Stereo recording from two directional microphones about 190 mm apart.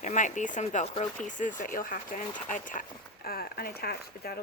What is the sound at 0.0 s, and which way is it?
Speech, 40° left (ahead or behind).